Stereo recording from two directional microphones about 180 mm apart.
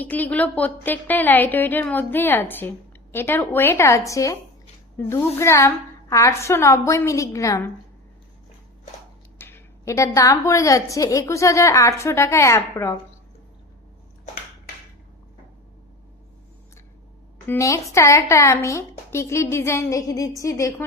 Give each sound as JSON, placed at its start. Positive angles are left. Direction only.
{"t": 0.0, "sound": "a woman's voice", "side_deg": 10}
{"t": 9.4, "sound": "a woman's voice", "side_deg": 15}
{"t": 17.5, "sound": "a woman's voice", "side_deg": 15}